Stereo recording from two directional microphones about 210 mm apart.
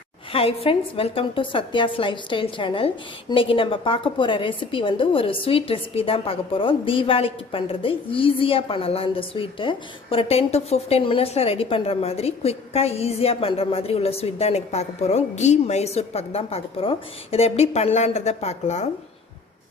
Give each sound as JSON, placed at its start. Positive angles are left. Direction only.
{"t": 0.3, "sound": "a woman's voice", "side_deg": 25}